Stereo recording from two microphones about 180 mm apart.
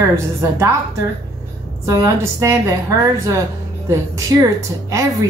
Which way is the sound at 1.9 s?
15° right (ahead or behind).